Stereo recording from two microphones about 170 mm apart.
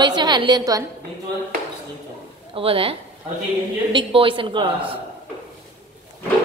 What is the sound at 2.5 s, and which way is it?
A woman's voice, 35° right (ahead or behind).